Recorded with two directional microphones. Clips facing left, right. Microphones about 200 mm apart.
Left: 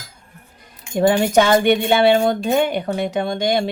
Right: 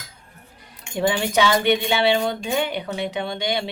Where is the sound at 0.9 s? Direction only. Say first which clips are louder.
Left 6 dB; 45° left (ahead or behind).